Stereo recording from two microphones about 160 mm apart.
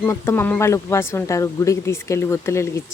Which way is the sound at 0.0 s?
15° left (ahead or behind).